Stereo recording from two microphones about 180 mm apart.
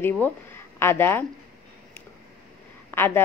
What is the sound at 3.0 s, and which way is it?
Speech, 10° left (ahead or behind).